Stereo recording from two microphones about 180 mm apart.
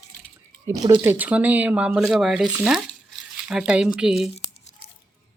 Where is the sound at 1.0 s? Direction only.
10° right (ahead or behind).